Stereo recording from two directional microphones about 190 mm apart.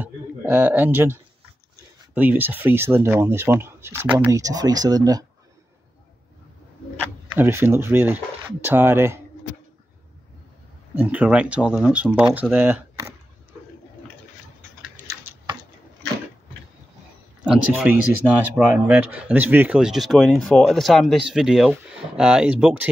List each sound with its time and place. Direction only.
0.0 s speech: 10° right (ahead or behind)
7.3 s speech: 10° right (ahead or behind)
11.0 s speech: 5° right (ahead or behind)
17.7 s speech: 10° right (ahead or behind)